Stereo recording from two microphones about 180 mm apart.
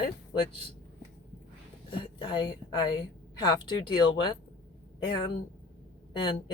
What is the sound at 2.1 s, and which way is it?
A woman's voice, 25° left (ahead or behind).